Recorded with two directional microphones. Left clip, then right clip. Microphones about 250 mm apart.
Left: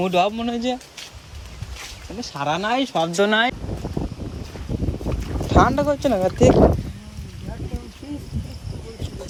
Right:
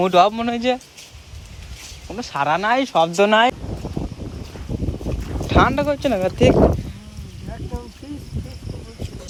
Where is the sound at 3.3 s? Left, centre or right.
Right.